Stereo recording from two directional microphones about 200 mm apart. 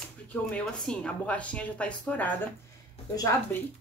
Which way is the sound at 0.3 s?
5° left (ahead or behind).